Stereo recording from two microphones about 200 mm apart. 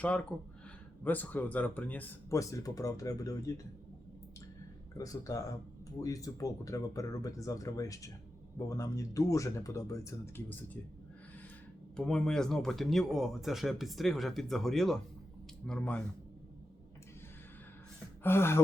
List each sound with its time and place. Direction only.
1.0 s speech: 10° left (ahead or behind)
4.9 s speech: 15° left (ahead or behind)
11.9 s speech: 5° left (ahead or behind)
18.2 s gasp: 10° left (ahead or behind)